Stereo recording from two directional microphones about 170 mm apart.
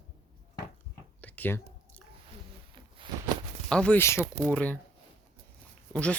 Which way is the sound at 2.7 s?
30° right (ahead or behind).